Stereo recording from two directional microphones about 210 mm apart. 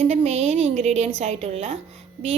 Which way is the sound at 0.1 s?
30° right (ahead or behind).